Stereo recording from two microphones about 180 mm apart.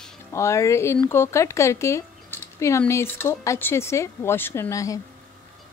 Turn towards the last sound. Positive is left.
turn(degrees=15)  # may be behind; listen again after turning